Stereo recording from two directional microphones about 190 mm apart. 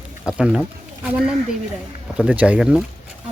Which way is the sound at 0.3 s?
5° right (ahead or behind).